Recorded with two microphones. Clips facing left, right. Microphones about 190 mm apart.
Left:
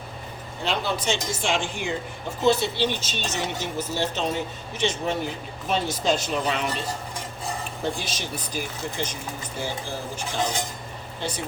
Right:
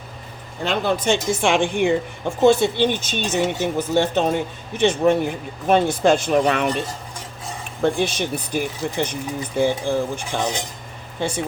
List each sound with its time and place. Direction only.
0.6 s speech: 55° right (ahead or behind)